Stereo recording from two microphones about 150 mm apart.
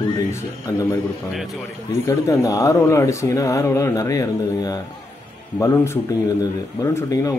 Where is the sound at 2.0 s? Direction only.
20° left (ahead or behind).